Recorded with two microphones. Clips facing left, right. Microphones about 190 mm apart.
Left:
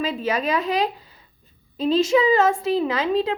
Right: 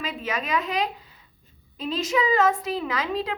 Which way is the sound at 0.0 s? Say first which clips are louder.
Left 7 dB; 30° left (ahead or behind).